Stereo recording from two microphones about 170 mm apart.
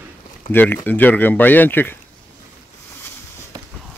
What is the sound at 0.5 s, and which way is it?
Speech, 10° left (ahead or behind).